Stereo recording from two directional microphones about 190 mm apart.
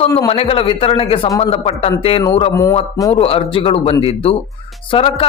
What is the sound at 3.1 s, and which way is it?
Speech, 30° left (ahead or behind).